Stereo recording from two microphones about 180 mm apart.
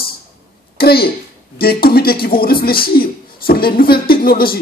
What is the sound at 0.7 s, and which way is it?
A man's voice, 60° left (ahead or behind).